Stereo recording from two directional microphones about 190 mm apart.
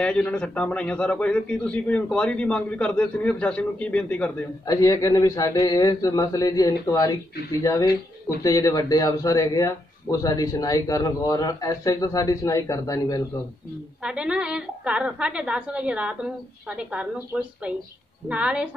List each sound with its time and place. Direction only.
0.0 s a man's voice: 5° left (ahead or behind)
14.0 s a woman's voice: 5° right (ahead or behind)